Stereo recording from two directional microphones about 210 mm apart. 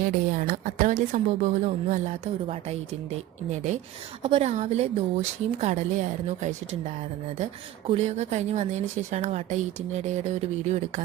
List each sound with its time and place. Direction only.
0.0 s a woman's voice: 40° right (ahead or behind)
3.5 s a woman's voice: 35° right (ahead or behind)
7.9 s a woman's voice: 30° right (ahead or behind)